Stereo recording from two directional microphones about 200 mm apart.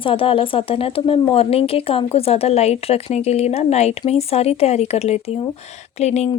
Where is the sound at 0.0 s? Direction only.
25° left (ahead or behind).